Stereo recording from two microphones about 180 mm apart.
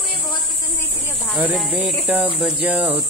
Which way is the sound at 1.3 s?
5° right (ahead or behind).